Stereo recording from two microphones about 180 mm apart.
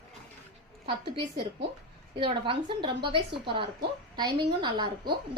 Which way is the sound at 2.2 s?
25° right (ahead or behind).